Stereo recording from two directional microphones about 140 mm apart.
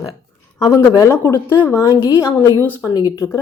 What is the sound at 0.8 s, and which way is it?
A woman's voice, 20° left (ahead or behind).